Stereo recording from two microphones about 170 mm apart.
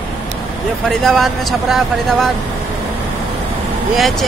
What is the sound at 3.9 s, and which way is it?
Speech, centre (ahead or behind).